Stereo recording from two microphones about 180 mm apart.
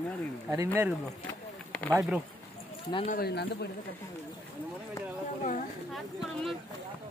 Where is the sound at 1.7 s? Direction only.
10° left (ahead or behind).